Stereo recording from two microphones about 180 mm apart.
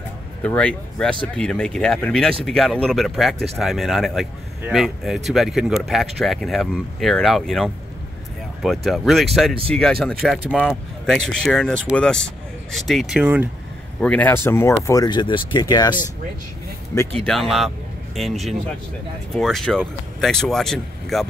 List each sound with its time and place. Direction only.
0.4 s speech: 5° left (ahead or behind); by 13.5 s 10° right (ahead or behind)
13.9 s speech: 5° left (ahead or behind); by 16.0 s 25° left (ahead or behind)
17.2 s speech: centre (ahead or behind)